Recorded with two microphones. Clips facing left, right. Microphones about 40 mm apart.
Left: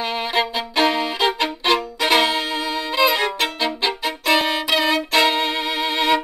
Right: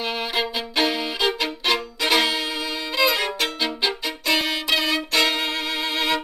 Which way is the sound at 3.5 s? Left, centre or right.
Centre.